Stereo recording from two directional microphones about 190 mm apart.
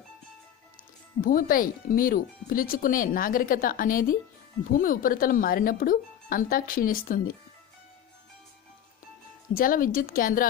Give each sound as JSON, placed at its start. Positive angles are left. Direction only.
{"t": 1.2, "sound": "speech", "side_deg": 50}
{"t": 9.5, "sound": "speech", "side_deg": 45}